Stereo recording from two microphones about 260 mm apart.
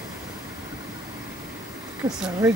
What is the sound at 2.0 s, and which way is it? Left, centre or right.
Vehicle, centre.